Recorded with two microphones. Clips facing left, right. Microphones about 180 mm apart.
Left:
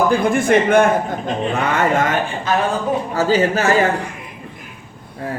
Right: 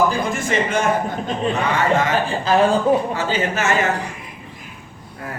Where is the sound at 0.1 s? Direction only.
55° left (ahead or behind).